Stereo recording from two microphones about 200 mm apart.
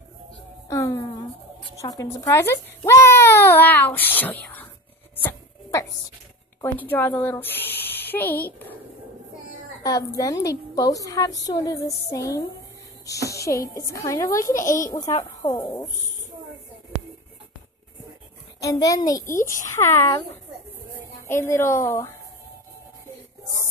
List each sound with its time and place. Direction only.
0.7 s a woman's voice: 15° left (ahead or behind)
5.1 s dog: 10° left (ahead or behind)
6.6 s a woman's voice: 10° left (ahead or behind)
9.8 s a woman's voice: 15° left (ahead or behind)
13.0 s a sound: 15° left (ahead or behind)
13.7 s a woman's voice: 15° left (ahead or behind)
18.6 s a woman's voice: 15° left (ahead or behind)
21.3 s a woman's voice: 15° left (ahead or behind)